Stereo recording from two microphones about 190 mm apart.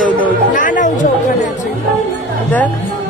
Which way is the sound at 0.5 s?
45° left (ahead or behind).